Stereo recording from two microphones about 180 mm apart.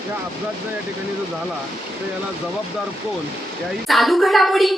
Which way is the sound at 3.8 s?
Centre (ahead or behind).